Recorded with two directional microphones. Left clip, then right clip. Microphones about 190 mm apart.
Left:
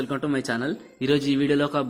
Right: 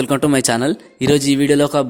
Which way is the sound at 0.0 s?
55° right (ahead or behind).